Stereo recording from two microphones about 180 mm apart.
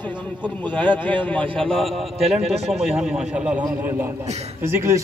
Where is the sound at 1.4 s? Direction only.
30° right (ahead or behind).